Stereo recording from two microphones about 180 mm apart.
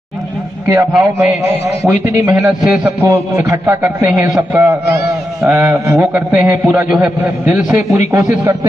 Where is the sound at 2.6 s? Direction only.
Centre (ahead or behind).